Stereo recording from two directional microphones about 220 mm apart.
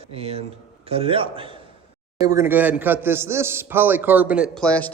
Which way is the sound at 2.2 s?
15° right (ahead or behind).